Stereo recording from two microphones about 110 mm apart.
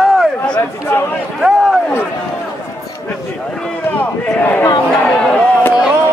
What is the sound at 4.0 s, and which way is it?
Speech, 15° left (ahead or behind).